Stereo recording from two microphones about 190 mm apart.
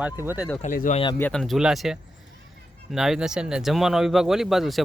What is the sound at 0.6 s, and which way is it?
Speech, 45° left (ahead or behind).